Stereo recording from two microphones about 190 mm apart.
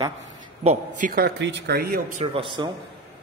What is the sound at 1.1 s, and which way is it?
Speech, 60° right (ahead or behind).